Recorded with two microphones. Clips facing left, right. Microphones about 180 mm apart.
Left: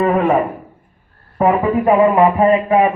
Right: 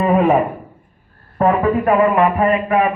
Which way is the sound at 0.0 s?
5° right (ahead or behind).